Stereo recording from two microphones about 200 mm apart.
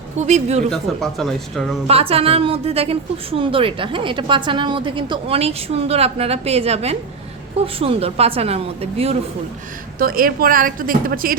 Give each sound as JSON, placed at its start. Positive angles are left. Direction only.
{"t": 0.3, "sound": "a woman's voice", "side_deg": -35}
{"t": 0.7, "sound": "speech", "side_deg": 0}
{"t": 1.9, "sound": "a woman's voice", "side_deg": -30}
{"t": 10.0, "sound": "speech", "side_deg": -45}